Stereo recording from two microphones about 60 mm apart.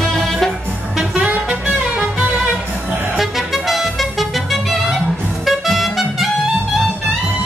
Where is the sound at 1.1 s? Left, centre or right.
Right.